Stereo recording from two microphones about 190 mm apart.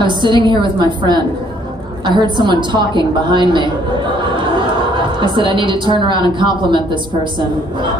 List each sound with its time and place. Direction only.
0.0 s a woman's voice: 25° right (ahead or behind)
4.2 s chatter: 25° right (ahead or behind)
5.2 s a woman's voice: 25° right (ahead or behind)